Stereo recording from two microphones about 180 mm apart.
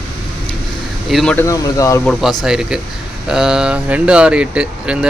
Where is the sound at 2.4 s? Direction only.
5° right (ahead or behind).